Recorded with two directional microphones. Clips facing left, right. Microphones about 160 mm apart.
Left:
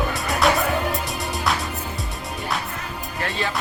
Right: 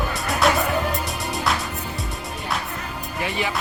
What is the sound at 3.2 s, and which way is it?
Music, 15° right (ahead or behind).